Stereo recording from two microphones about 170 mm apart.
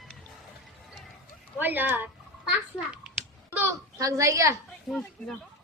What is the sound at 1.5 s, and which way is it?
Speech, 10° right (ahead or behind).